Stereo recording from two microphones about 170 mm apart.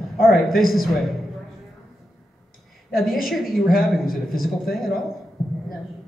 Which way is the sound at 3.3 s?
Centre (ahead or behind).